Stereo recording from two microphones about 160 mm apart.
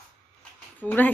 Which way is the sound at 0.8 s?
10° left (ahead or behind).